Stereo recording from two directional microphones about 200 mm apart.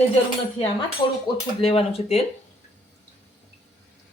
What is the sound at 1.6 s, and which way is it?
Speech, 30° left (ahead or behind).